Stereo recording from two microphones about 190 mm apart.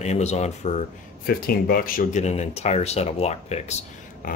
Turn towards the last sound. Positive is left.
turn(degrees=35)  # may be behind; listen again after turning